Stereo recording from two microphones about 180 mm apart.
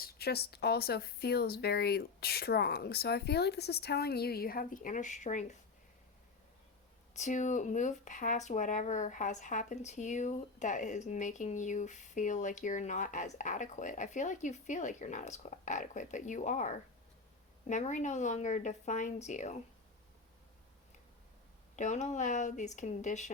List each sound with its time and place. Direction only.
0.0 s speech: 60° left (ahead or behind); by 5.5 s 45° left (ahead or behind)
7.1 s speech: 40° left (ahead or behind)
21.8 s speech: 40° left (ahead or behind)